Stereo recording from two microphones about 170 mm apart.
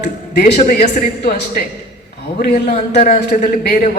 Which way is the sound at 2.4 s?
60° left (ahead or behind).